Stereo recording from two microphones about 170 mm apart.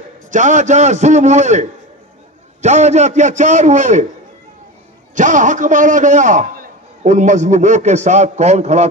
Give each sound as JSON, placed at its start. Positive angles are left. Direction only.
{"t": 0.3, "sound": "a man's voice", "side_deg": -45}
{"t": 5.1, "sound": "a man's voice", "side_deg": -45}